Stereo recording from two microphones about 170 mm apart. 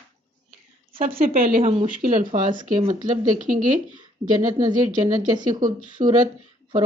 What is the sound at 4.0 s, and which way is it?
Speech, 25° right (ahead or behind).